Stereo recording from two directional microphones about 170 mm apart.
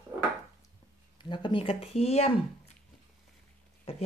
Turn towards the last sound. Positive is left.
turn(degrees=35)  # may be behind; listen again after turning